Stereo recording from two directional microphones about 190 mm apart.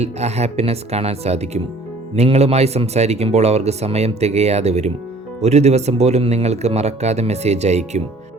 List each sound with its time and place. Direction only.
0.0 s speech: 35° right (ahead or behind)